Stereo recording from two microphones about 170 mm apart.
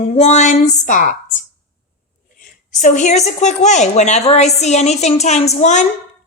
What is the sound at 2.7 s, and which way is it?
A woman's voice, 45° left (ahead or behind).